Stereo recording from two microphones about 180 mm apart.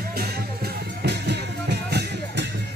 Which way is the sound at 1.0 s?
70° right (ahead or behind).